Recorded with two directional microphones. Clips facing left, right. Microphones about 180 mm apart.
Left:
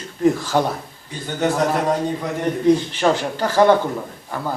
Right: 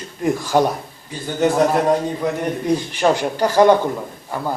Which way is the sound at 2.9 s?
15° right (ahead or behind).